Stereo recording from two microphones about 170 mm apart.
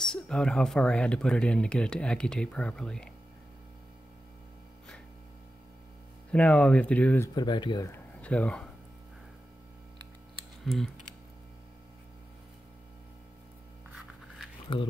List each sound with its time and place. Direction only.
0.0 s speech: 5° left (ahead or behind)
6.3 s speech: 5° left (ahead or behind)
7.3 s speech: 25° left (ahead or behind)
7.9 s speech: 10° left (ahead or behind)
10.6 s speech: centre (ahead or behind)
14.7 s speech: 30° left (ahead or behind)